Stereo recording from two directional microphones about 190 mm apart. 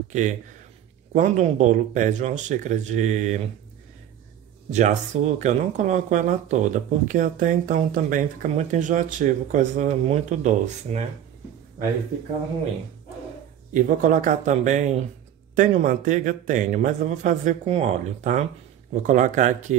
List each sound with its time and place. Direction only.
0.1 s speech: 40° right (ahead or behind)
4.6 s speech: 40° right (ahead or behind)
13.7 s speech: 45° right (ahead or behind)